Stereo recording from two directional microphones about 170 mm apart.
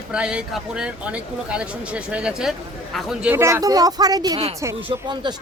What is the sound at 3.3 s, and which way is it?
Speech, 15° right (ahead or behind).